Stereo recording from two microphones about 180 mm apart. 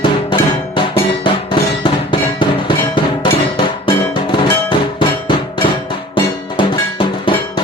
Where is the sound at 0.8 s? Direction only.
25° left (ahead or behind).